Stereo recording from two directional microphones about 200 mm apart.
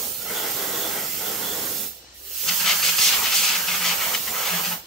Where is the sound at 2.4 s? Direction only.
Centre (ahead or behind).